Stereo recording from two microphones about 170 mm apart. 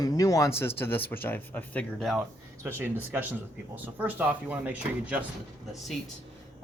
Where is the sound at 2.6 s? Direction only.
15° right (ahead or behind).